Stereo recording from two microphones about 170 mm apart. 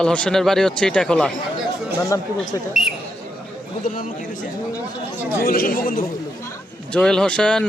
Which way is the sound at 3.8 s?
50° left (ahead or behind).